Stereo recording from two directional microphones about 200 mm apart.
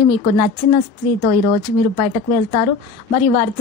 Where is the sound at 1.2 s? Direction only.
40° left (ahead or behind).